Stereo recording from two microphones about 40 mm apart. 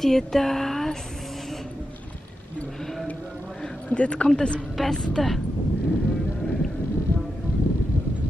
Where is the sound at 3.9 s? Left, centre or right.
Left.